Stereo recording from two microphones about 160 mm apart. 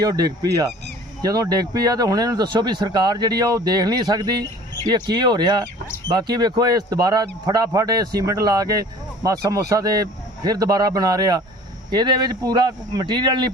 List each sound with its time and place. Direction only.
0.0 s speech: 25° right (ahead or behind)